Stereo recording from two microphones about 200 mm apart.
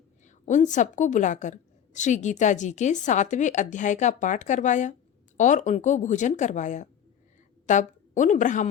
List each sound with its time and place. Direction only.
0.3 s a woman's voice: 40° left (ahead or behind)